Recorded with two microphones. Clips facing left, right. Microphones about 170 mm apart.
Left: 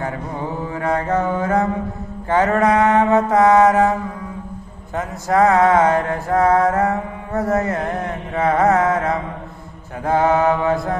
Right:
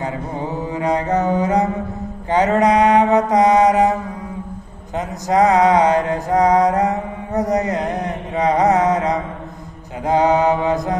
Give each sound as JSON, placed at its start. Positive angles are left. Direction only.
{"t": 0.0, "sound": "mantra", "side_deg": -15}
{"t": 4.9, "sound": "mantra", "side_deg": -20}